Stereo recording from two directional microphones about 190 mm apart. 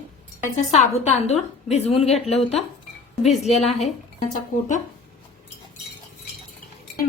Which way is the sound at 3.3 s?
Centre (ahead or behind).